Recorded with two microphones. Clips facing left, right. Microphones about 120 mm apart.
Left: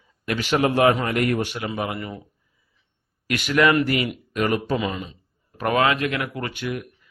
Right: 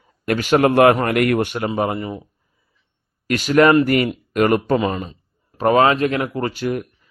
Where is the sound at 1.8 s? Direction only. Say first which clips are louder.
Right 6 dB; 25° right (ahead or behind).